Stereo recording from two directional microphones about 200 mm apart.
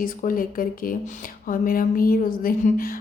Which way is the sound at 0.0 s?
45° left (ahead or behind).